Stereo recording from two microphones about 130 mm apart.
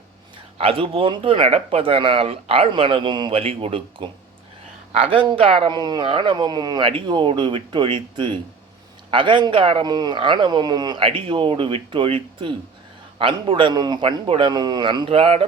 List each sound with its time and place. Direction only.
0.6 s speech: 45° right (ahead or behind)